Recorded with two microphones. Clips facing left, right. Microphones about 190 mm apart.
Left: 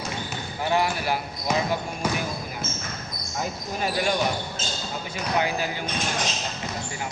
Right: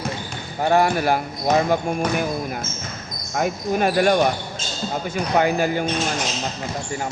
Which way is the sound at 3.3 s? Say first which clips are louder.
Right 9 dB; 65° right (ahead or behind).